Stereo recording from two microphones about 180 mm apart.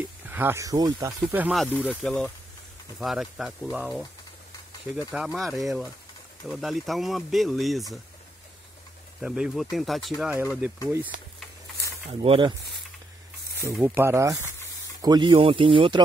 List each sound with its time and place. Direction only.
0.3 s speech: 10° right (ahead or behind)
1.3 s speech: 10° right (ahead or behind)
1.9 s speech: 5° left (ahead or behind)
9.2 s speech: 5° right (ahead or behind)
12.1 s speech: 30° right (ahead or behind)
13.7 s speech: 15° right (ahead or behind); by 16.0 s 30° right (ahead or behind)